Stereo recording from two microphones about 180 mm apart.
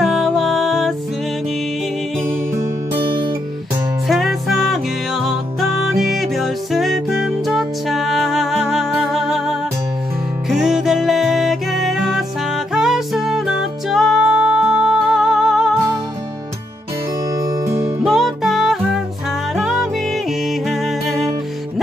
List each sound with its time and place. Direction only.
0.0 s music: centre (ahead or behind)
4.1 s music: centre (ahead or behind)
17.3 s music: 20° right (ahead or behind)
18.0 s music: centre (ahead or behind)